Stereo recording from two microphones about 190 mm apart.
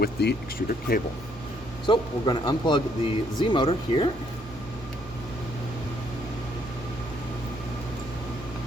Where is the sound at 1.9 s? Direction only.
25° left (ahead or behind).